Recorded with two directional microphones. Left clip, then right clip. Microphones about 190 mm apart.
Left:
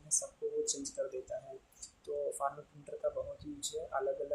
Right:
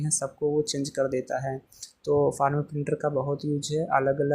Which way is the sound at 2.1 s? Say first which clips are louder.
Right 15 dB; 35° right (ahead or behind).